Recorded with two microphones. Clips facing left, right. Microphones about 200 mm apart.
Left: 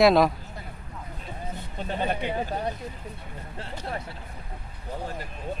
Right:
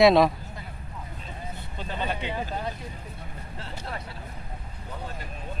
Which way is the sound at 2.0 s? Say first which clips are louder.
Left 3 dB; 50° left (ahead or behind).